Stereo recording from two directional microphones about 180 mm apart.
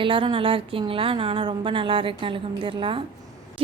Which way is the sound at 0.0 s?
30° right (ahead or behind).